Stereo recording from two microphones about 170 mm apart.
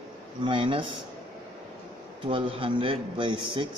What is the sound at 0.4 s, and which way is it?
Speech, 30° right (ahead or behind).